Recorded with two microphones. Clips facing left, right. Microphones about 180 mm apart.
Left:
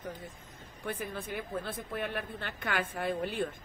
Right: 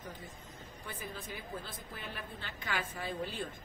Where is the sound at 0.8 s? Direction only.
60° left (ahead or behind).